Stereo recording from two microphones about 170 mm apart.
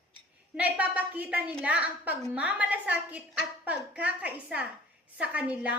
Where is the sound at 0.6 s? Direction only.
10° right (ahead or behind).